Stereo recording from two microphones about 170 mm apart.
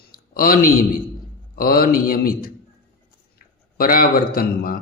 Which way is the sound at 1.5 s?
60° left (ahead or behind).